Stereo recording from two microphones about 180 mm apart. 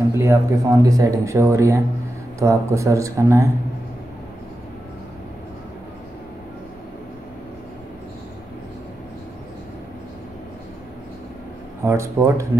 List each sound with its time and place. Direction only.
0.2 s speech: 15° right (ahead or behind)
11.8 s speech: 15° right (ahead or behind)